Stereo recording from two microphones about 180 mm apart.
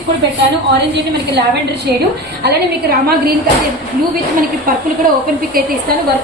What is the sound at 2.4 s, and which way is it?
Speech, 60° right (ahead or behind).